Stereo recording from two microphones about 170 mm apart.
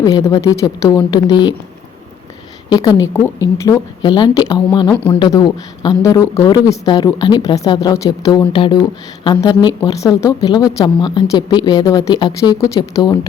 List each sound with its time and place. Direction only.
0.0 s a woman's voice: 20° left (ahead or behind)
2.6 s a woman's voice: 25° left (ahead or behind)
4.9 s speech: 10° left (ahead or behind)
5.2 s a woman's voice: 25° left (ahead or behind)